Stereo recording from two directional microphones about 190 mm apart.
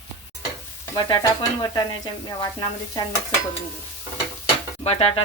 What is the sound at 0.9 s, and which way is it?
Stir, 20° left (ahead or behind).